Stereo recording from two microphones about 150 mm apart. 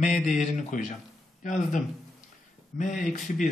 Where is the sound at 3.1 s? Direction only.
55° left (ahead or behind).